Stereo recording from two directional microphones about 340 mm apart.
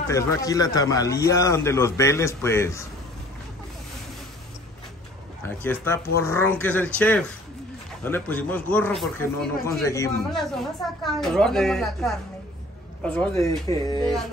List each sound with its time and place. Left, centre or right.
0.1 s a man's voice: centre
5.4 s a man's voice: centre